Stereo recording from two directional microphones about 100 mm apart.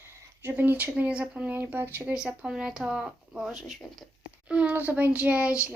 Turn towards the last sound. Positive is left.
turn(degrees=-10)  # may be behind; listen again after turning